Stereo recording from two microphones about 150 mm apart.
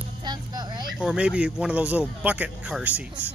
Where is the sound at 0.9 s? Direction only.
5° right (ahead or behind).